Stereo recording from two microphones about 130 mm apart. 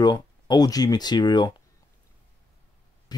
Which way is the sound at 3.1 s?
30° left (ahead or behind).